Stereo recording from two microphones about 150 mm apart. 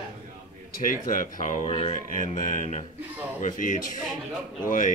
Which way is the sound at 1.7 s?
40° left (ahead or behind).